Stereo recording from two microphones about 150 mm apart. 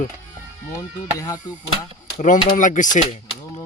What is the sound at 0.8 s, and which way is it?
Speech, 20° left (ahead or behind).